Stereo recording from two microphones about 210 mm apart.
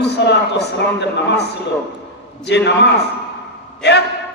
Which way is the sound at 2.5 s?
55° left (ahead or behind).